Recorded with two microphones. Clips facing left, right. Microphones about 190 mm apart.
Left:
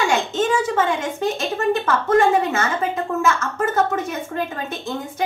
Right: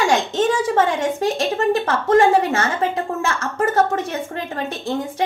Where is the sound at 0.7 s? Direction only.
35° right (ahead or behind).